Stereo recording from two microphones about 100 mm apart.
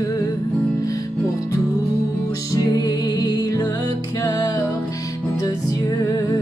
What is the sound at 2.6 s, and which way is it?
Music, 40° left (ahead or behind).